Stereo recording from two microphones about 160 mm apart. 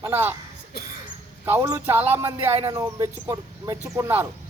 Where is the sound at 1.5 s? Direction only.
15° right (ahead or behind).